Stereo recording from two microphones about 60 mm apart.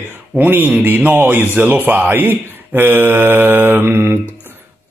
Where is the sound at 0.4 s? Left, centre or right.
Right.